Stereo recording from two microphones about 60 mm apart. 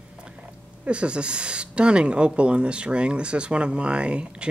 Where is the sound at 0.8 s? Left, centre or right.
Centre.